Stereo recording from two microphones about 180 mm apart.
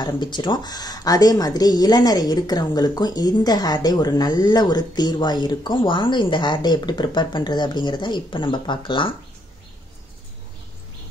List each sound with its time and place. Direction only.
0.0 s speech: 25° left (ahead or behind)